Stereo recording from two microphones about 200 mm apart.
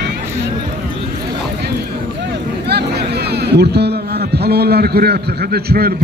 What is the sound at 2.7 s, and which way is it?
A man's voice, 55° right (ahead or behind).